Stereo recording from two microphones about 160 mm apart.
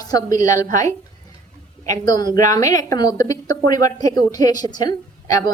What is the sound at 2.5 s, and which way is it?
A woman's voice, 20° left (ahead or behind).